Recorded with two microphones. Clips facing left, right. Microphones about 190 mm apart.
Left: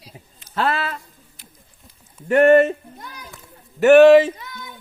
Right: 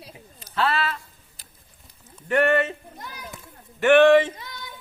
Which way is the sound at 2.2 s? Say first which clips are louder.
Left 8 dB; 40° left (ahead or behind).